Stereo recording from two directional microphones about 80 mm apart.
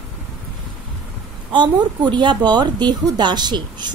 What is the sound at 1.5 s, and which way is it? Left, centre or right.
A woman's voice, right.